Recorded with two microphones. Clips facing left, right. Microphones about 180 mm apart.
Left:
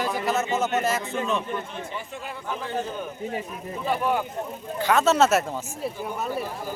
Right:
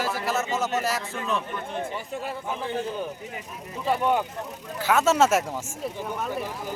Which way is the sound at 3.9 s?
25° right (ahead or behind).